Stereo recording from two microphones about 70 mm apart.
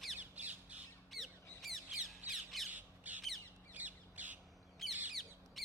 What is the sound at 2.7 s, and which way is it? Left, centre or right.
Squawk, right.